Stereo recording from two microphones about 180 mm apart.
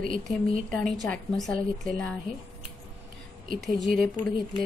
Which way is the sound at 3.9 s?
55° right (ahead or behind).